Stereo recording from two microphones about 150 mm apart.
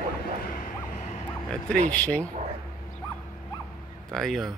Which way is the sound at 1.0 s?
45° left (ahead or behind).